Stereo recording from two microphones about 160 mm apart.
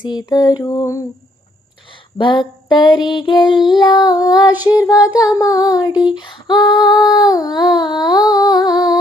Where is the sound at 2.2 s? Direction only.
30° left (ahead or behind).